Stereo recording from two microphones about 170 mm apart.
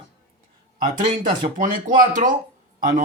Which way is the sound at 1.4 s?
50° right (ahead or behind).